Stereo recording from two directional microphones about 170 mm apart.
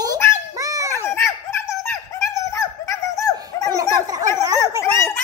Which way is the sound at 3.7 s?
20° right (ahead or behind).